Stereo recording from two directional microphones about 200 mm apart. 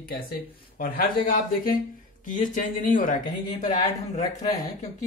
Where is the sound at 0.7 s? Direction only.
45° left (ahead or behind).